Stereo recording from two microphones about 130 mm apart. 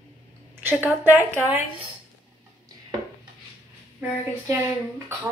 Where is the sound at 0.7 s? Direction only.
15° right (ahead or behind).